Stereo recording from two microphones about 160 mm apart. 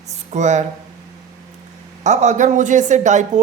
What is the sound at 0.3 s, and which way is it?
Speech, 45° right (ahead or behind).